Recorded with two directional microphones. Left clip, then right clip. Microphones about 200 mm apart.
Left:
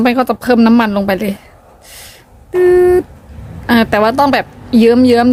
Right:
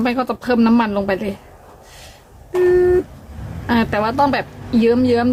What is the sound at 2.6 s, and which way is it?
A woman's voice, 55° left (ahead or behind).